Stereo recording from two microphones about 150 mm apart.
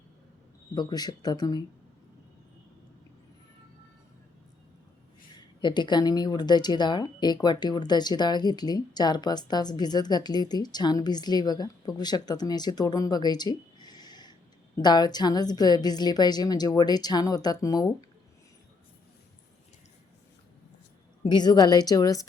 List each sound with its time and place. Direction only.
0.7 s speech: 30° left (ahead or behind)
5.5 s speech: 30° left (ahead or behind)
21.2 s speech: 30° left (ahead or behind)